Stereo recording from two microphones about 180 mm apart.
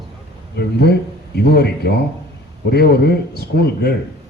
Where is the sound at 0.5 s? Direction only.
65° left (ahead or behind).